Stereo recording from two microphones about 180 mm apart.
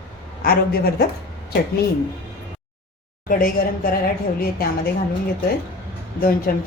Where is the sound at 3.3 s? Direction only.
50° left (ahead or behind).